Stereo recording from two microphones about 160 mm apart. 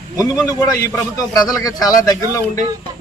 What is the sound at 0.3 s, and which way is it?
A man's voice, 20° left (ahead or behind).